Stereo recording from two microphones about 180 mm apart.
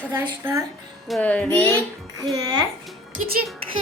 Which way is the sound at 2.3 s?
20° right (ahead or behind).